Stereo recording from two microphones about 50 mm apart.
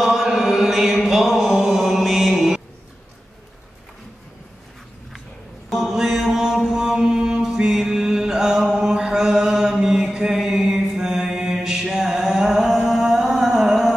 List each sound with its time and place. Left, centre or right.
0.0 s chant: centre
5.7 s mantra: centre